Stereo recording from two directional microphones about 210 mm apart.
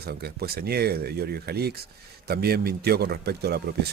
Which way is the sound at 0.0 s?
50° right (ahead or behind).